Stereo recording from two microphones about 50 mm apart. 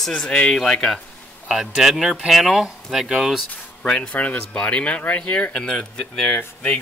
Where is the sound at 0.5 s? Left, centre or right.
Centre.